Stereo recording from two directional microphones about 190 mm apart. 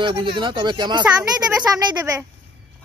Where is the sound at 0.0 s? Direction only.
25° right (ahead or behind).